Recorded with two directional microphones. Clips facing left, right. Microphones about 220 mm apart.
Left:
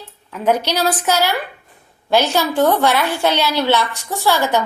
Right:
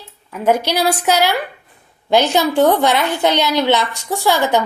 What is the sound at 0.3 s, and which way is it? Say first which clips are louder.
A woman's voice: right 1 dB; 10° right (ahead or behind).